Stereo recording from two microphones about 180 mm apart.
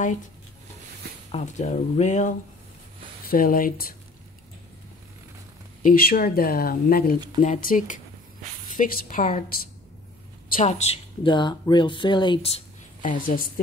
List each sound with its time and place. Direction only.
1.3 s speech: 40° left (ahead or behind)
3.3 s a woman's voice: 50° left (ahead or behind)
5.8 s a woman's voice: 50° left (ahead or behind); by 12.5 s 30° left (ahead or behind)
13.0 s a woman's voice: 45° left (ahead or behind)